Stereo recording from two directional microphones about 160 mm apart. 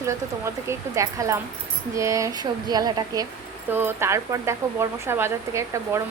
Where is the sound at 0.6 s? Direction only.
20° right (ahead or behind).